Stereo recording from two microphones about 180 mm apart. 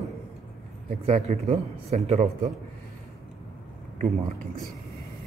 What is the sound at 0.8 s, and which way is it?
A man's voice, 40° right (ahead or behind).